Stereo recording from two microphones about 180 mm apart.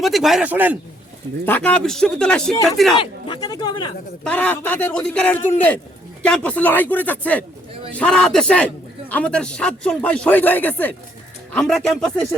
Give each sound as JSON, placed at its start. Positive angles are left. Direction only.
{"t": 0.0, "sound": "speech", "side_deg": 0}
{"t": 1.5, "sound": "speech", "side_deg": 10}
{"t": 3.0, "sound": "speech", "side_deg": 25}
{"t": 4.2, "sound": "a man's voice", "side_deg": 10}